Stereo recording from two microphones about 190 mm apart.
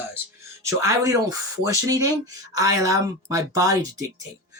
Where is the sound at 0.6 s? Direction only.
15° right (ahead or behind).